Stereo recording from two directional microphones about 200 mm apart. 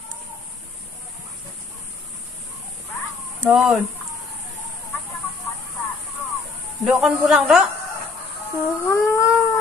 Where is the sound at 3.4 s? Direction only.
Centre (ahead or behind).